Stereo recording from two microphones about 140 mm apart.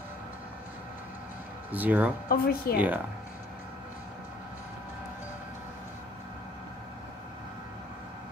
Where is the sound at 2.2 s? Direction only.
90° left.